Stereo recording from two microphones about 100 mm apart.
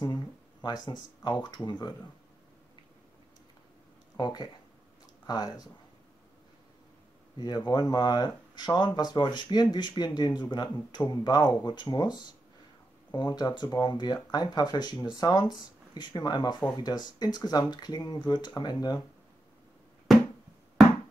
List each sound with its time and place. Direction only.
0.0 s speech: 45° left (ahead or behind)
4.2 s speech: 45° left (ahead or behind)
7.3 s speech: 45° left (ahead or behind)